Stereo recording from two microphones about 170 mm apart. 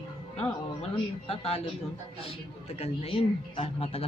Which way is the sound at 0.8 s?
35° left (ahead or behind).